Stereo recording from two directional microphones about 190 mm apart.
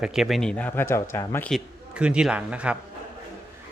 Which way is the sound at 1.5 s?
5° right (ahead or behind).